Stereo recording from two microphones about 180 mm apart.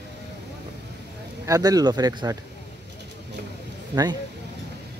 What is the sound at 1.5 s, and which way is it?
Speech, 20° right (ahead or behind).